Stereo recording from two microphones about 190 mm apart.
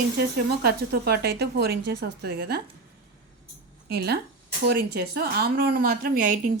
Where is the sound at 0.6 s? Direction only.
55° right (ahead or behind).